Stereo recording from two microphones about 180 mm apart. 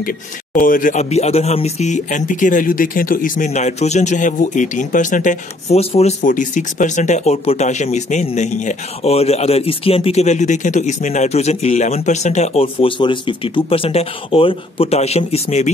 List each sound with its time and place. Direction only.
0.6 s speech: 50° left (ahead or behind)